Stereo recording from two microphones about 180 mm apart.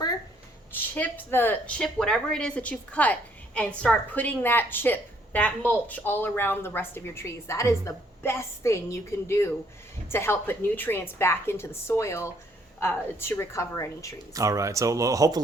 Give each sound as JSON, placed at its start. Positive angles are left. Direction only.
{"t": 0.7, "sound": "speech", "side_deg": 10}
{"t": 14.3, "sound": "speech", "side_deg": -20}